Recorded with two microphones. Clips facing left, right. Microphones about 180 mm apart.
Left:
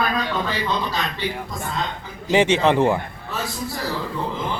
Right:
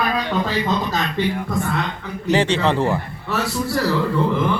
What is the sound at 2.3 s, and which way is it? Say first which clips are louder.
Speech: left 1 dB; 15° left (ahead or behind).